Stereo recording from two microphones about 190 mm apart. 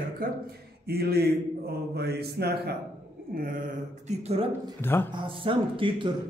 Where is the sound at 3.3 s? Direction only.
50° right (ahead or behind).